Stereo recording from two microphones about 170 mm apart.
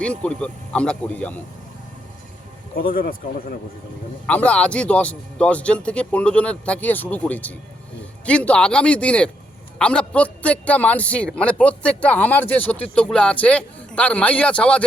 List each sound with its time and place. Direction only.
0.0 s a man's voice: 5° left (ahead or behind)
2.9 s speech: 60° left (ahead or behind)
4.3 s a man's voice: 10° left (ahead or behind)